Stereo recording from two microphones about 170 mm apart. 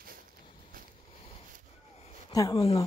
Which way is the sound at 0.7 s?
55° right (ahead or behind).